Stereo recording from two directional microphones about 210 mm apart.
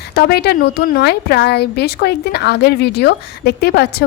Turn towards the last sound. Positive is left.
turn(degrees=50)  # may be behind; listen again after turning